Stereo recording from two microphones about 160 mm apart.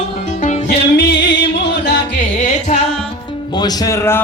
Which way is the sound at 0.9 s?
90° left.